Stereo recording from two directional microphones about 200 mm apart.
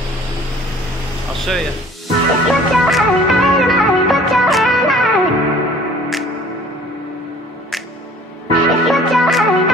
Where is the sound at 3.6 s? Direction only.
Centre (ahead or behind).